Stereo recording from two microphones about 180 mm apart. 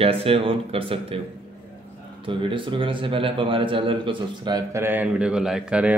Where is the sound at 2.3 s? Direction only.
30° right (ahead or behind).